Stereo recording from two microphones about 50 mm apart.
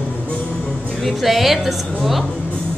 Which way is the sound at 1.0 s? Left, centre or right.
Centre.